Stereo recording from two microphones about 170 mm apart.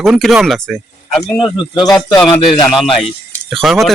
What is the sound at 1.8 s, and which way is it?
Speech, 25° left (ahead or behind).